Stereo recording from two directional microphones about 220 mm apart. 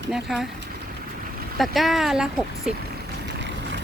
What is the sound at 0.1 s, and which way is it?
Speech, centre (ahead or behind).